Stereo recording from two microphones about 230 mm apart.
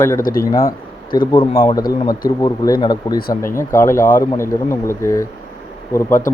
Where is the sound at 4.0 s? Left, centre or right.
Left.